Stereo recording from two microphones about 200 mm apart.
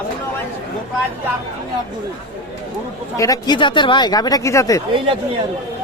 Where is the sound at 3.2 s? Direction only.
20° left (ahead or behind).